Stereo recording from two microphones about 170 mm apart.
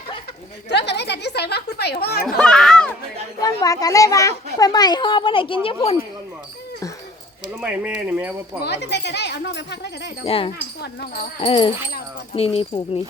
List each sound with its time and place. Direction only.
0.7 s a woman's voice: 90° left; by 2.2 s 70° left (ahead or behind)
2.2 s a child's voice: 5° left (ahead or behind)
3.4 s a woman's voice: 20° left (ahead or behind)
7.6 s speech: 10° right (ahead or behind)
8.6 s speech: 80° left
10.2 s speech: 35° left (ahead or behind)
10.8 s a woman's voice: 65° left (ahead or behind)
11.3 s speech: 30° left (ahead or behind)